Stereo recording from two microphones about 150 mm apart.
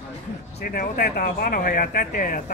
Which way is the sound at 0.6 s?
75° left (ahead or behind).